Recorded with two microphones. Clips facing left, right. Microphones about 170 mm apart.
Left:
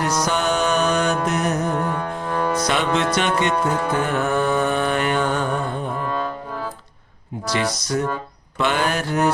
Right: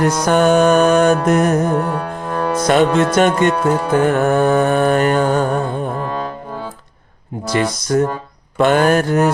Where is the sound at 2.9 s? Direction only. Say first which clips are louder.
Right 6 dB; 45° right (ahead or behind).